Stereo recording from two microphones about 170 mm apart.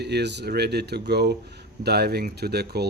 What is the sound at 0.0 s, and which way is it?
Speech, 80° right.